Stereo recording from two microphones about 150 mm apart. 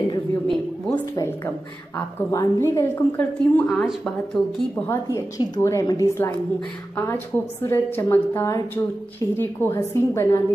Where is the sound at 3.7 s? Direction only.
Centre (ahead or behind).